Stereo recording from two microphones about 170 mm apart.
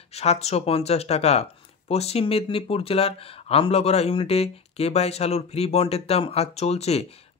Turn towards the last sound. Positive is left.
turn(degrees=40)  # may be behind; listen again after turning